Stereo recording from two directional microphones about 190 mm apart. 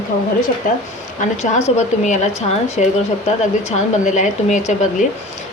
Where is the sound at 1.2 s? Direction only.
40° left (ahead or behind).